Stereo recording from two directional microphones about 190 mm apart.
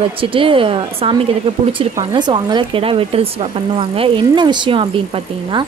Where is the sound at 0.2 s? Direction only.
30° right (ahead or behind).